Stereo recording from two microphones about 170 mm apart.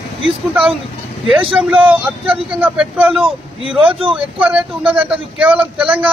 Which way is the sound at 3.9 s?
30° right (ahead or behind).